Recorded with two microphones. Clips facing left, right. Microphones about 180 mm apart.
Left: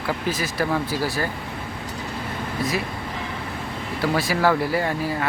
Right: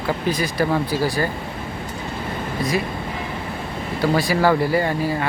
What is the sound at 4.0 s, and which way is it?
Speech, centre (ahead or behind).